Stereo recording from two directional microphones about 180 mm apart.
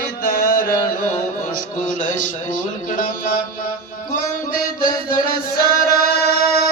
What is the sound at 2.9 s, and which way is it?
Music, 50° left (ahead or behind).